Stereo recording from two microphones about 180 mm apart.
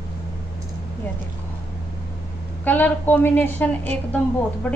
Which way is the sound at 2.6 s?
10° left (ahead or behind).